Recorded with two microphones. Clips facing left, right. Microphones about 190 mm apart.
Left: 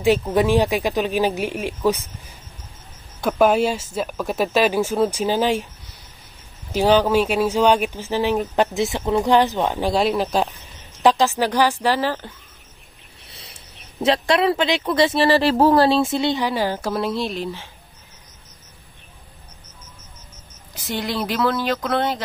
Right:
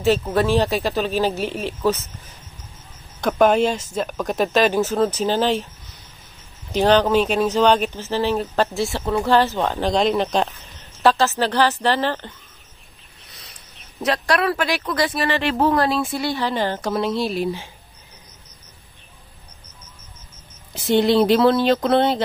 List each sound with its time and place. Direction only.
0.3 s speech: 15° left (ahead or behind)
6.7 s speech: 10° left (ahead or behind)
11.0 s speech: 15° left (ahead or behind)
13.3 s speech: 30° left (ahead or behind)
16.4 s a woman's voice: 10° left (ahead or behind); by 17.6 s 10° right (ahead or behind)
20.7 s speech: 25° right (ahead or behind)